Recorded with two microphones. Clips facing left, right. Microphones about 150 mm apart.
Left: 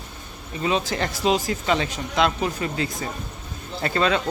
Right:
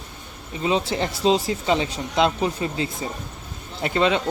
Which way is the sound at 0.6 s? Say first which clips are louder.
Right 1 dB; 25° right (ahead or behind).